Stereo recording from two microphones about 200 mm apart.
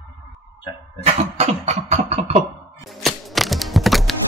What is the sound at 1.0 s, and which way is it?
Cough, 35° right (ahead or behind).